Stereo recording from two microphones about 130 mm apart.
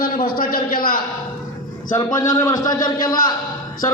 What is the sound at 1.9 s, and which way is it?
A man's voice, 25° left (ahead or behind).